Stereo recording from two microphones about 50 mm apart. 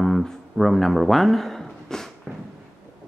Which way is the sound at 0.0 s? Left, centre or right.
Centre.